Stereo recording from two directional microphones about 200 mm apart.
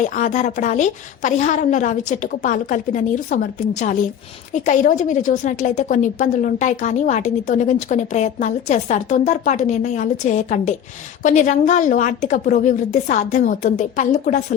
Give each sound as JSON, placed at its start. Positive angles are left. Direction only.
{"t": 0.0, "sound": "a woman's voice", "side_deg": 40}